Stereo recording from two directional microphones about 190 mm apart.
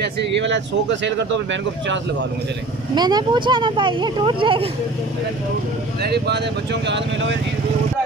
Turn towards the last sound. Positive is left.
turn(degrees=-70)  # may be behind; listen again after turning